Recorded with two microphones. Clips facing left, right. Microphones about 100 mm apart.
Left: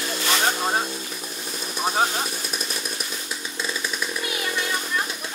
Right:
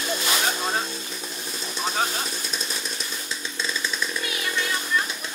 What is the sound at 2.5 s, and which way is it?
Chainsaw, 15° left (ahead or behind).